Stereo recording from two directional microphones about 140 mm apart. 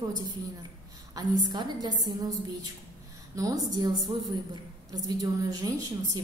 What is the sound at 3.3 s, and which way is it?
A woman's voice, 25° right (ahead or behind).